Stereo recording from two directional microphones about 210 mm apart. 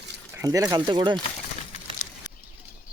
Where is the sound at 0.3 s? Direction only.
15° right (ahead or behind).